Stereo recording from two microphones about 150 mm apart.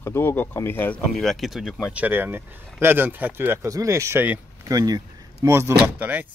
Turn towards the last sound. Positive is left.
turn(degrees=-10)  # may be behind; listen again after turning